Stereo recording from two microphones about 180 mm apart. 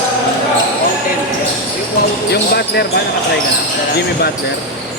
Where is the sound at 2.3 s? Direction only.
65° left (ahead or behind).